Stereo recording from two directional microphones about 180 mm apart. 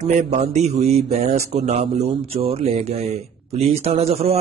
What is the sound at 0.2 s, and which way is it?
Speech, 40° right (ahead or behind).